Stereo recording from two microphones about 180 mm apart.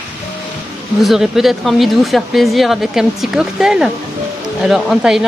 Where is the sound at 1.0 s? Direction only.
Centre (ahead or behind).